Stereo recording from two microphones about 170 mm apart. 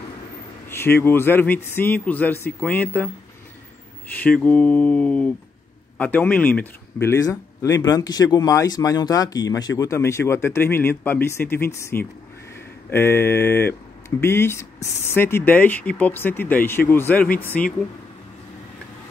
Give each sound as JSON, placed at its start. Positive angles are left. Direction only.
{"t": 0.7, "sound": "a man's voice", "side_deg": 15}
{"t": 4.1, "sound": "a man's voice", "side_deg": 5}